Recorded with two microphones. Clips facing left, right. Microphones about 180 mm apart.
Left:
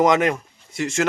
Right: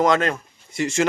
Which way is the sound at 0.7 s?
Centre (ahead or behind).